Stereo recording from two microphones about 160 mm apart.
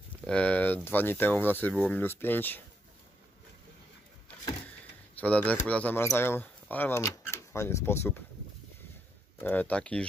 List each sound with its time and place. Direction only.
0.3 s speech: 10° left (ahead or behind)
4.6 s a sound: 10° left (ahead or behind)
6.0 s speech: 15° left (ahead or behind)
9.4 s speech: 10° left (ahead or behind)